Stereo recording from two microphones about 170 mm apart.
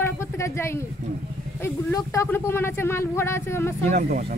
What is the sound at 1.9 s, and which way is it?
Speech, 15° left (ahead or behind).